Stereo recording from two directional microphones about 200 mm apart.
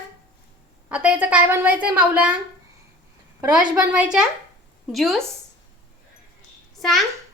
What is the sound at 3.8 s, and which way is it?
A child's voice, 5° right (ahead or behind).